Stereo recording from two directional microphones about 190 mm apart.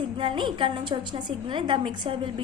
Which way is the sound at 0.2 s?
25° right (ahead or behind).